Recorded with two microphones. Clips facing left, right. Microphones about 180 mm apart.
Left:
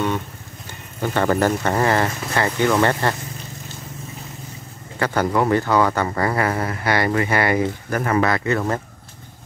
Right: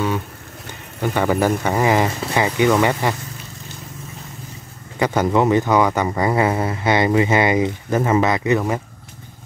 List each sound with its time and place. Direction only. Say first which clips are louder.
1.0 s speech: right 1 dB; 10° right (ahead or behind)
4.9 s speech: right 2 dB; 15° right (ahead or behind)